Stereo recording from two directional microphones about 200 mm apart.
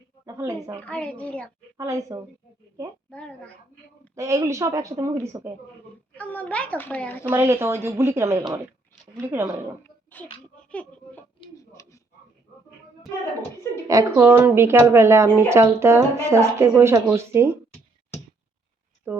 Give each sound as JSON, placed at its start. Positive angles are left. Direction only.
{"t": 0.3, "sound": "speech", "side_deg": -15}
{"t": 0.8, "sound": "a child's voice", "side_deg": 5}
{"t": 1.8, "sound": "speech", "side_deg": -15}
{"t": 3.1, "sound": "a woman's voice", "side_deg": 5}
{"t": 4.1, "sound": "speech", "side_deg": -15}
{"t": 6.1, "sound": "a child's voice", "side_deg": 10}
{"t": 7.3, "sound": "speech", "side_deg": -10}
{"t": 10.4, "sound": "a sound", "side_deg": 5}
{"t": 13.8, "sound": "speech", "side_deg": -15}
{"t": 19.1, "sound": "speech", "side_deg": -10}